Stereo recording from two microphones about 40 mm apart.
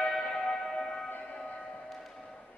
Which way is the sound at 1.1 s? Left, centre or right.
Left.